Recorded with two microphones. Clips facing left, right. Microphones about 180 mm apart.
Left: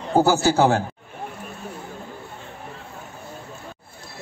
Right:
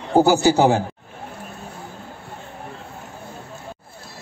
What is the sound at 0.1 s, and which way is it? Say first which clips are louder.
Speech: right 3 dB; 15° right (ahead or behind).